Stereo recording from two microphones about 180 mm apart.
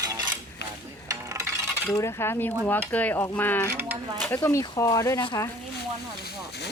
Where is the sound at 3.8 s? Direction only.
10° right (ahead or behind).